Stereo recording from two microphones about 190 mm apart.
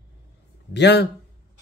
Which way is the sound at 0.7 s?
65° left (ahead or behind).